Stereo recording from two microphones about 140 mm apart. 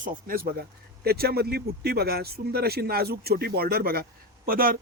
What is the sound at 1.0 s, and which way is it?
Speech, 90° right.